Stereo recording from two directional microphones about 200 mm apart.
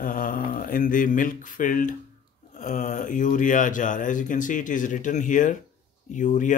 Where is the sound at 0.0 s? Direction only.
40° left (ahead or behind).